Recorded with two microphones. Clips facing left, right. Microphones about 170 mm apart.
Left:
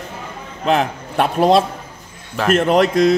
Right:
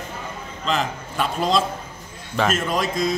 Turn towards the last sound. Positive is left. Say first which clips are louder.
# left 9 dB
turn(degrees=65)  # may be behind; listen again after turning